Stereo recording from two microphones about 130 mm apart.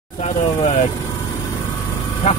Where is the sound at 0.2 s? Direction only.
65° left (ahead or behind).